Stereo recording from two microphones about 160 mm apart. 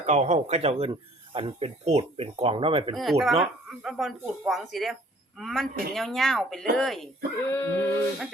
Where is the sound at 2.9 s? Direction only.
Centre (ahead or behind).